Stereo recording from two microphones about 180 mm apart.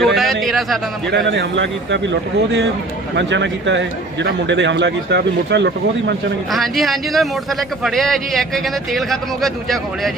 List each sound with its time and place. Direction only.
0.0 s a sound: centre (ahead or behind)
1.1 s a man's voice: 75° right (ahead or behind)
3.2 s a man's voice: 80° right
6.5 s a man's voice: centre (ahead or behind)